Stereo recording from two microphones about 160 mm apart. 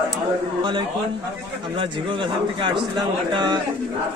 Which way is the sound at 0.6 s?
30° right (ahead or behind).